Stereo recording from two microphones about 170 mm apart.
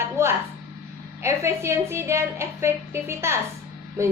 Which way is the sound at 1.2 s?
15° right (ahead or behind).